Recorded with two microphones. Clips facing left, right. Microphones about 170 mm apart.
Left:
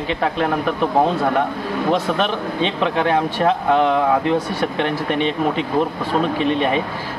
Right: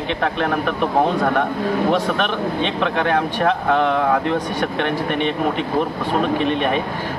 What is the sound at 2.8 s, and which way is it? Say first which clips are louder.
Speech: left 1 dB; 10° left (ahead or behind).